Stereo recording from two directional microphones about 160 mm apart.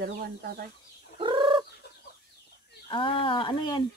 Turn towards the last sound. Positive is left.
turn(degrees=30)  # may be behind; listen again after turning